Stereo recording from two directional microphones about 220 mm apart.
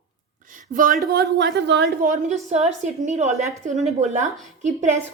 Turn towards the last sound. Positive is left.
turn(degrees=-30)  # may be behind; listen again after turning